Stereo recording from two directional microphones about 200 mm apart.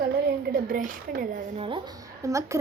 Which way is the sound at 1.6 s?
25° right (ahead or behind).